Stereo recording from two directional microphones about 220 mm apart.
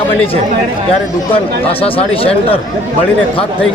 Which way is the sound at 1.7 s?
25° left (ahead or behind).